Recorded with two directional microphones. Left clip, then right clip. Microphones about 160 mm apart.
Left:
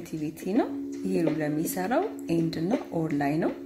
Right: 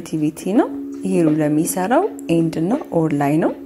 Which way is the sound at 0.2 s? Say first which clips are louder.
Right 10 dB; 30° right (ahead or behind).